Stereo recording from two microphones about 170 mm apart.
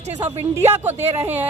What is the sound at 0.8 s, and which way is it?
Speech, 10° right (ahead or behind).